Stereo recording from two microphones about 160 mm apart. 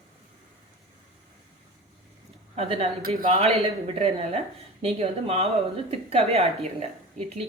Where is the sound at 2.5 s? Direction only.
40° right (ahead or behind).